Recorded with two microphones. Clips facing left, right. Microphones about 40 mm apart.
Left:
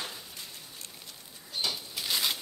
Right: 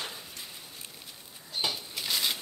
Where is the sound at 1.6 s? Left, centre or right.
Centre.